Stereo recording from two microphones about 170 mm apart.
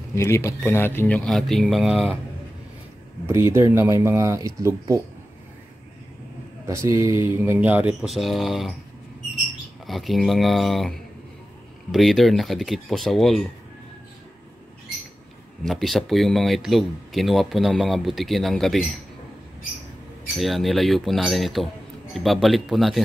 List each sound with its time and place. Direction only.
0.1 s speech: 15° left (ahead or behind); by 2.1 s centre (ahead or behind)
3.3 s speech: 15° right (ahead or behind)
6.6 s speech: 15° right (ahead or behind); by 8.7 s centre (ahead or behind)
9.8 s speech: centre (ahead or behind)
15.6 s speech: centre (ahead or behind)
20.3 s speech: centre (ahead or behind)